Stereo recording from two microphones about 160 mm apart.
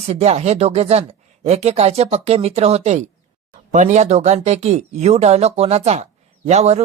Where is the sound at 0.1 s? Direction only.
40° right (ahead or behind).